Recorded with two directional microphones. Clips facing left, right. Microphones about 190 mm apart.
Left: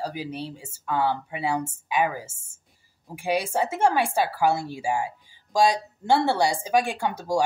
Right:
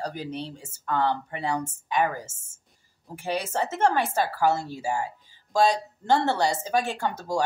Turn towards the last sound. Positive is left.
turn(degrees=10)  # may be behind; listen again after turning